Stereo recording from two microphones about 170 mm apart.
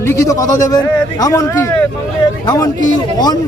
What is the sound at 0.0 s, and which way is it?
Speech, 15° left (ahead or behind).